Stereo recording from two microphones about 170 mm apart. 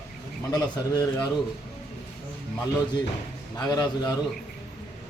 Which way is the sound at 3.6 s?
25° left (ahead or behind).